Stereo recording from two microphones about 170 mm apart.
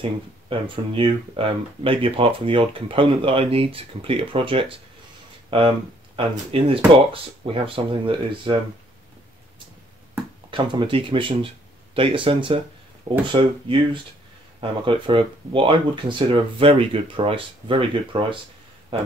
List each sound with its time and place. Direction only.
0.5 s speech: 30° right (ahead or behind)
10.5 s speech: 30° right (ahead or behind)